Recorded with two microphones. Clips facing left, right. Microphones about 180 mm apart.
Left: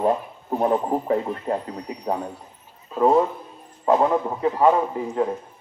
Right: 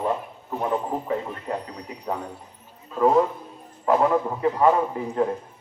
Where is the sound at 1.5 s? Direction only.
30° left (ahead or behind).